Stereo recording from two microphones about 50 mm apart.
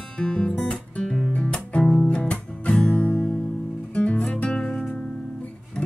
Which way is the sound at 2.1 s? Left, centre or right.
Left.